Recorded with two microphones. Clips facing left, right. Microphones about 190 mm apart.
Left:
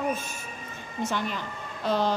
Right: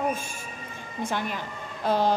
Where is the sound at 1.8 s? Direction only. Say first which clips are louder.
Right 2 dB; 10° right (ahead or behind).